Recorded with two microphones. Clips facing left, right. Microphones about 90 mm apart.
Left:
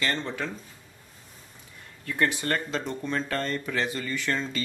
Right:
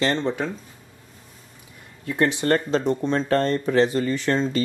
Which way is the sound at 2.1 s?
20° right (ahead or behind).